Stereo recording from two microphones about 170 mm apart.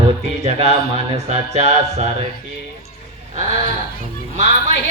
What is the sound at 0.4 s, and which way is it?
Speech, 40° right (ahead or behind).